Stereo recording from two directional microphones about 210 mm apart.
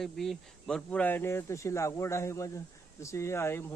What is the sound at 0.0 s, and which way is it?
Speech, centre (ahead or behind).